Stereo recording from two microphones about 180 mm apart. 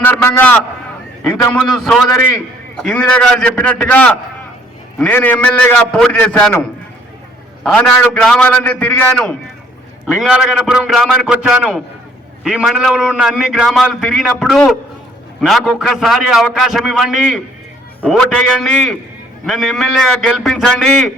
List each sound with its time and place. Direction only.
0.0 s a man's voice: 10° left (ahead or behind)